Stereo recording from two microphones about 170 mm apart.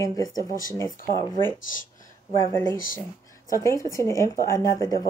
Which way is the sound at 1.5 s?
50° left (ahead or behind).